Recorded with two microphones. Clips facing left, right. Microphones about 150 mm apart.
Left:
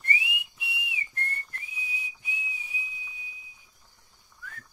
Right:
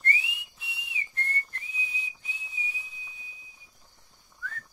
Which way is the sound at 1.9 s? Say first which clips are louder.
Left 1 dB; 10° left (ahead or behind).